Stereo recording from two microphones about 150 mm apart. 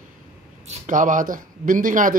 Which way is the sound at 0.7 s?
60° right (ahead or behind).